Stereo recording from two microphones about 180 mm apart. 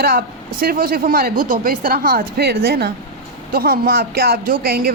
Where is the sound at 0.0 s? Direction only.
55° right (ahead or behind).